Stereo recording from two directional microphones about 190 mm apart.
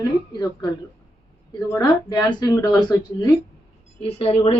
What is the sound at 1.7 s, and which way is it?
Speech, 20° left (ahead or behind).